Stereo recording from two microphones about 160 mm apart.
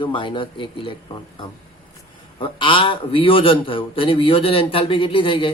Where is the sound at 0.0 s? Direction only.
30° left (ahead or behind).